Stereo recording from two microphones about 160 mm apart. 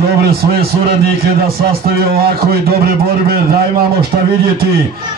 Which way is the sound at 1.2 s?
70° right (ahead or behind).